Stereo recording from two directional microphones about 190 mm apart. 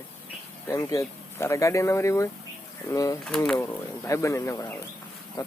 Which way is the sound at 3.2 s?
5° left (ahead or behind).